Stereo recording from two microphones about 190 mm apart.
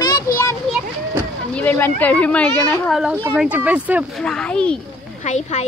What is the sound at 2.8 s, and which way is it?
Speech, 5° right (ahead or behind).